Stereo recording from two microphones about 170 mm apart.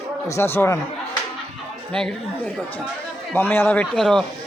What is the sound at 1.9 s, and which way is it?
A man's voice, 5° left (ahead or behind).